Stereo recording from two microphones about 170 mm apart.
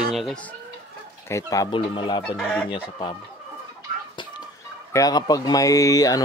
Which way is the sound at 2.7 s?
30° left (ahead or behind).